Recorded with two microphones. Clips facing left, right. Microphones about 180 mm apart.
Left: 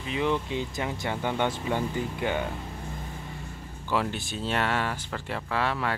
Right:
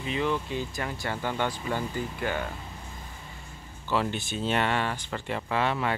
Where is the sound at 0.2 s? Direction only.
20° left (ahead or behind).